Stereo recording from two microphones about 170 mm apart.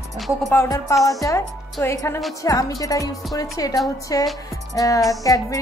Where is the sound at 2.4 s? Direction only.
20° left (ahead or behind).